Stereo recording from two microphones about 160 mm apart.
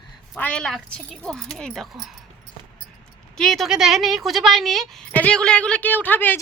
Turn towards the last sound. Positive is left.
turn(degrees=10)  # may be behind; listen again after turning